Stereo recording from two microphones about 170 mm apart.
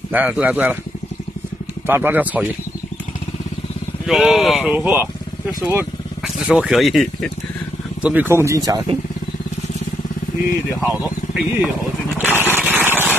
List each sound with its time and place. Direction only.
0.1 s speech: 10° right (ahead or behind)
1.9 s speech: 10° right (ahead or behind)
4.0 s speech: centre (ahead or behind)
6.2 s speech: centre (ahead or behind)
8.0 s speech: 10° right (ahead or behind)
10.9 s speech: centre (ahead or behind)
12.2 s a sound: 10° right (ahead or behind)